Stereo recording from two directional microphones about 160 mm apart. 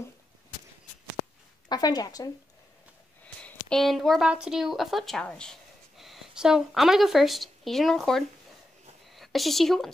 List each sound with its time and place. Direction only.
1.7 s speech: 25° left (ahead or behind)
3.3 s speech: 5° left (ahead or behind)